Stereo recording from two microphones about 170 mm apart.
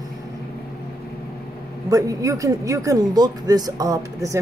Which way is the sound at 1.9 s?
20° right (ahead or behind).